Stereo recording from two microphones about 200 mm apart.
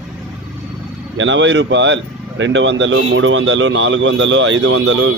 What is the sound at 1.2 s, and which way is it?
Speech, 65° right (ahead or behind).